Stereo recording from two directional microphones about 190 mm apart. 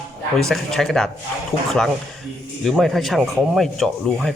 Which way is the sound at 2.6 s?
Centre (ahead or behind).